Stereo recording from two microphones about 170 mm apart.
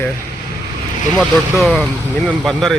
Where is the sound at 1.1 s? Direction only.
5° right (ahead or behind).